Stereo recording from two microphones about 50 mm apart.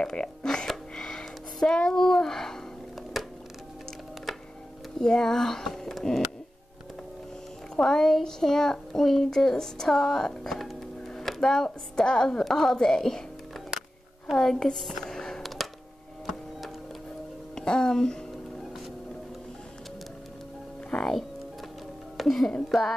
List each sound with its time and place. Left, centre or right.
0.0 s speech: centre
0.7 s a sound: centre
3.1 s music: centre
4.9 s speech: centre
7.7 s speech: centre
13.7 s a sound: centre
15.4 s a sound: centre
17.6 s speech: centre
20.9 s music: centre
22.1 s speech: centre
22.6 s music: centre